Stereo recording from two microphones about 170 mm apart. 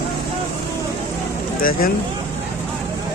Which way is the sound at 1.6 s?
55° left (ahead or behind).